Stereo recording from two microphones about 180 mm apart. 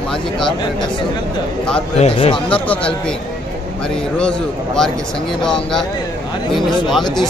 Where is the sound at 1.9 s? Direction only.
30° left (ahead or behind).